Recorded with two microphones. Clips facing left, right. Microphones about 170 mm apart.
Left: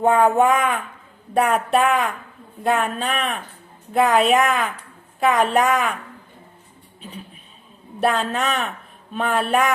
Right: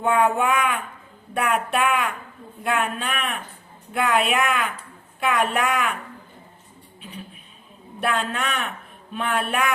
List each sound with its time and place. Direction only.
0.0 s speech: 40° left (ahead or behind)
8.0 s speech: 40° left (ahead or behind)